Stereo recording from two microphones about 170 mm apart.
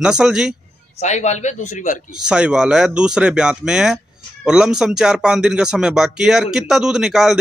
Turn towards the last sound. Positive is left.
turn(degrees=-5)  # may be behind; listen again after turning